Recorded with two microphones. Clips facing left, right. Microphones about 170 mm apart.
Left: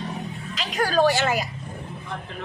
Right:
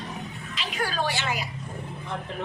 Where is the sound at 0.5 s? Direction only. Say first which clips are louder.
Left 8 dB; 40° left (ahead or behind).